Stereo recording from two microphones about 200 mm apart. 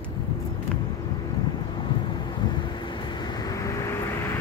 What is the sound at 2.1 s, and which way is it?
Vehicle, 20° left (ahead or behind).